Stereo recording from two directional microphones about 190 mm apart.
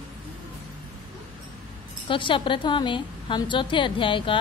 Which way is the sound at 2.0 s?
25° left (ahead or behind).